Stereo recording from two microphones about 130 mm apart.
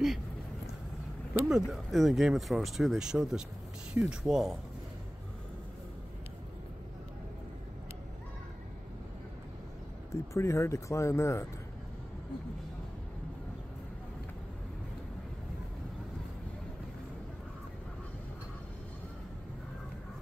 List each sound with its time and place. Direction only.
1.5 s speech: centre (ahead or behind)
10.1 s speech: 20° left (ahead or behind)